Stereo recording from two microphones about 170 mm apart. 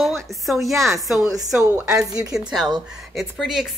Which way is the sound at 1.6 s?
15° right (ahead or behind).